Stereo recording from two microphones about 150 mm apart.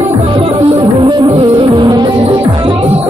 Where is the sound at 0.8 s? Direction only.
25° right (ahead or behind).